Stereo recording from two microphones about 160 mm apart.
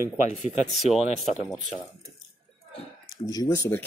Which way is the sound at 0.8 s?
Centre (ahead or behind).